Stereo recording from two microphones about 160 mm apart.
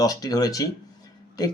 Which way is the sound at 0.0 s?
25° left (ahead or behind).